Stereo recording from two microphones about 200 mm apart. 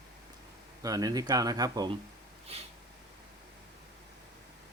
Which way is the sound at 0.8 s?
20° right (ahead or behind).